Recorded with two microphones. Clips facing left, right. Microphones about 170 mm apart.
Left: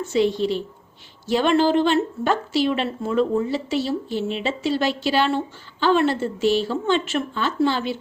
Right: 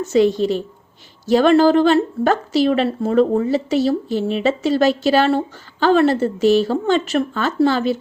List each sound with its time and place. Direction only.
0.0 s a woman's voice: 45° right (ahead or behind)